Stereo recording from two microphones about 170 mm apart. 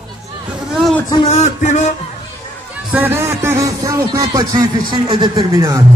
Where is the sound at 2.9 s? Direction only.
10° right (ahead or behind).